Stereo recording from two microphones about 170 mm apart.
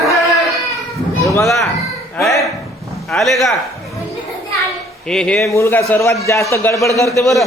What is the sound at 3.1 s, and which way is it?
Speech, centre (ahead or behind).